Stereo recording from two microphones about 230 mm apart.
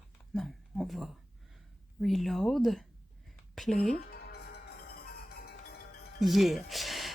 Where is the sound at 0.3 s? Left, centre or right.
Centre.